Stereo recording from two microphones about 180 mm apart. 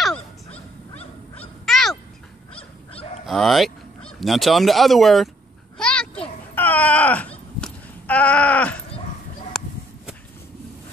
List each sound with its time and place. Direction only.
0.9 s goose: 10° left (ahead or behind)
2.5 s dog: 30° left (ahead or behind)
3.3 s speech: centre (ahead or behind)
5.8 s a sound: 5° left (ahead or behind)